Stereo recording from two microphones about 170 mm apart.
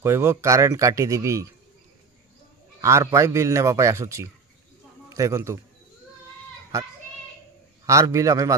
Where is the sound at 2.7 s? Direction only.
15° right (ahead or behind).